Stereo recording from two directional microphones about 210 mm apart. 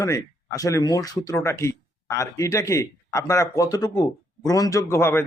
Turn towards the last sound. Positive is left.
turn(degrees=10)  # may be behind; listen again after turning